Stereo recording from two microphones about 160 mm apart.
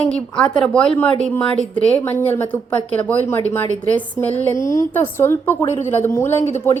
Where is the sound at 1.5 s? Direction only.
50° right (ahead or behind).